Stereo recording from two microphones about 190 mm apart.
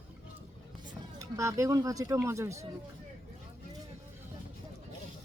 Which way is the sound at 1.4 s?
15° right (ahead or behind).